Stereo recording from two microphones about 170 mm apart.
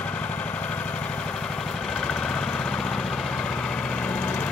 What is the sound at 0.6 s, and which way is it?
Vehicle, 10° left (ahead or behind).